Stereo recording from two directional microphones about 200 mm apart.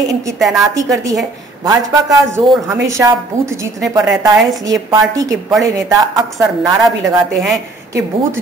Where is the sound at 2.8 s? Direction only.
15° right (ahead or behind).